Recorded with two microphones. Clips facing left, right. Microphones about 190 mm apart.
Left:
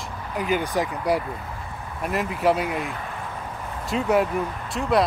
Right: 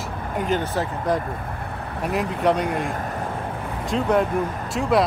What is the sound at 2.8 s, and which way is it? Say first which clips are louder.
Speech: right 4 dB; 45° right (ahead or behind).